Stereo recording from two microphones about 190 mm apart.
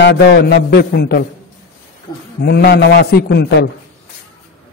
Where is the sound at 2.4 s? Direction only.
60° left (ahead or behind).